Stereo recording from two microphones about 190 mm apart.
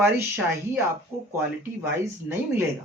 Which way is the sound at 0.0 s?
10° right (ahead or behind).